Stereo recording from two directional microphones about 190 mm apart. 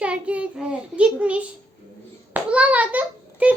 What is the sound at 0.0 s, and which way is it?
Child singing, 5° right (ahead or behind).